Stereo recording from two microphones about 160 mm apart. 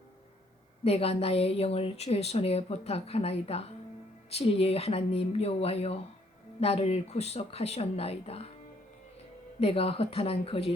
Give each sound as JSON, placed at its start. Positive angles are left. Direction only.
{"t": 0.9, "sound": "a woman's voice", "side_deg": 40}
{"t": 9.6, "sound": "a woman's voice", "side_deg": 35}